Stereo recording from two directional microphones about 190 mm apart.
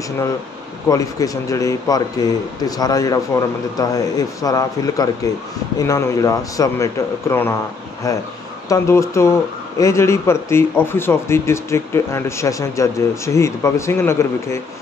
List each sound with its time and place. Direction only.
0.8 s a man's voice: 20° left (ahead or behind)